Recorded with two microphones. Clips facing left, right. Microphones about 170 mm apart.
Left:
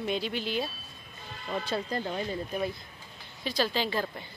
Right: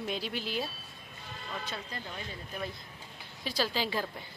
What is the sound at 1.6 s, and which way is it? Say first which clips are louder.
Speech: left 10 dB; 40° left (ahead or behind).